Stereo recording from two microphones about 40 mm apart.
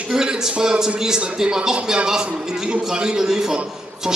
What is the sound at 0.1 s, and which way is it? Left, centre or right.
A man's voice, centre.